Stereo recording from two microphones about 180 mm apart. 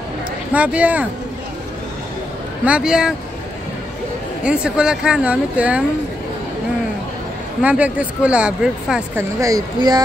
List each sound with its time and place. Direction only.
0.5 s speech: 5° right (ahead or behind)
2.6 s speech: 5° right (ahead or behind)
4.4 s speech: 5° right (ahead or behind)
7.6 s speech: 5° right (ahead or behind)
9.4 s speech: 20° right (ahead or behind)